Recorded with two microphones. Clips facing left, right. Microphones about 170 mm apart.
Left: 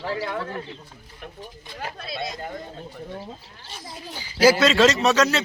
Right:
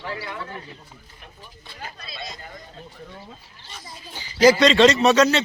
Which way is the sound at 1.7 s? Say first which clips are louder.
Left 6 dB; 55° left (ahead or behind).